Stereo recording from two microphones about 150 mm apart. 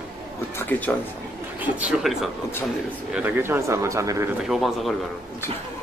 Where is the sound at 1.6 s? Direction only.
5° right (ahead or behind); by 4.3 s 20° right (ahead or behind).